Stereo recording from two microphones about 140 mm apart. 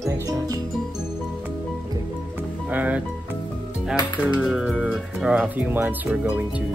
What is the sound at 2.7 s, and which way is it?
Speech, 10° right (ahead or behind).